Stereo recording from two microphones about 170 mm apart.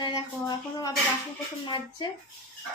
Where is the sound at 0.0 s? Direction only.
25° left (ahead or behind).